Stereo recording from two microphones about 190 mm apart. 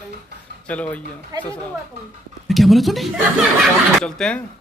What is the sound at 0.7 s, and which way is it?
Speech, 5° left (ahead or behind).